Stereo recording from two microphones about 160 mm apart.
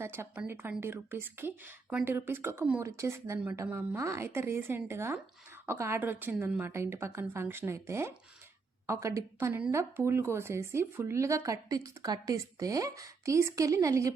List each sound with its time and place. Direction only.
0.0 s speech: 15° right (ahead or behind)